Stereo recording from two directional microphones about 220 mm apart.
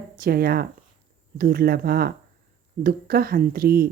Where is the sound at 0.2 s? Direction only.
45° right (ahead or behind).